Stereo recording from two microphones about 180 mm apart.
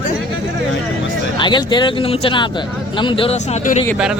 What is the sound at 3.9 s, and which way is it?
Speech, 5° right (ahead or behind).